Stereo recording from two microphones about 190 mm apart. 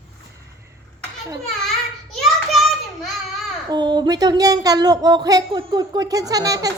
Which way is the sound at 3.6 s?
20° right (ahead or behind).